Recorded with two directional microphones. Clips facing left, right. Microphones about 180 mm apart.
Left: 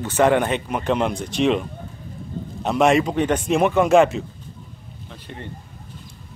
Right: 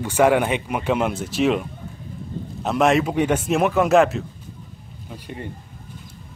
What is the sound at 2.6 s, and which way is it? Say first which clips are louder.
Speech: left 1 dB; centre (ahead or behind).